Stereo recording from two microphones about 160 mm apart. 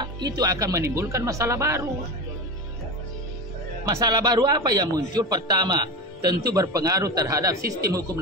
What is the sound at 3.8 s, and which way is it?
A man's voice, 25° right (ahead or behind).